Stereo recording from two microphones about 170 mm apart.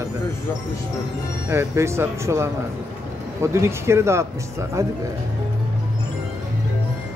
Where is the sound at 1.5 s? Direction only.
15° right (ahead or behind).